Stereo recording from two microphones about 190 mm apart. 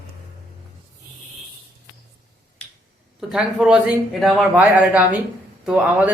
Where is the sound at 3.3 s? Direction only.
5° right (ahead or behind).